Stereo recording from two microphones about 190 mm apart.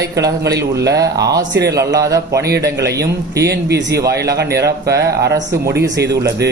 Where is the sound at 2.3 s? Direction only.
60° right (ahead or behind).